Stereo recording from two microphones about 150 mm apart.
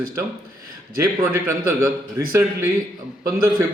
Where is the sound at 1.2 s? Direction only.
20° right (ahead or behind).